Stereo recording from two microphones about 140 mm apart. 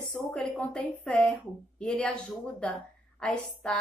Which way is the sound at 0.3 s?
5° left (ahead or behind).